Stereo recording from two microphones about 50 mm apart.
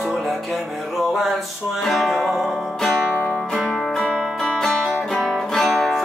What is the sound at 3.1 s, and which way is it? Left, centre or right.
Music, left.